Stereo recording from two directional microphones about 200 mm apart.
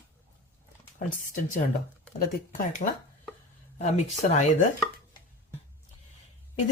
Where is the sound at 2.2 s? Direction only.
40° left (ahead or behind).